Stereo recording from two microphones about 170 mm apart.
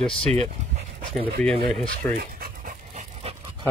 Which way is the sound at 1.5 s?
5° left (ahead or behind).